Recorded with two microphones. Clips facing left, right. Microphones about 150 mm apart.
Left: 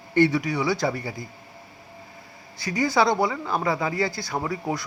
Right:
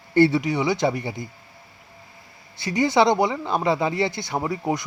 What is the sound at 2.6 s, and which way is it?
Speech, 20° right (ahead or behind).